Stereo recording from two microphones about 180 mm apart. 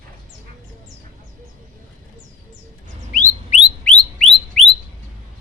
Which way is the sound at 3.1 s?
45° left (ahead or behind).